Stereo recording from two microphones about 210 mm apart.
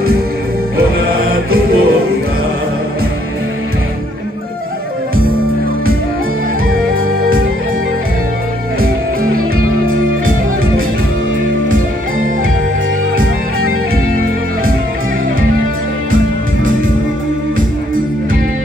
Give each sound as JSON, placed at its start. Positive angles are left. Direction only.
{"t": 1.3, "sound": "music", "side_deg": -45}
{"t": 8.8, "sound": "music", "side_deg": -45}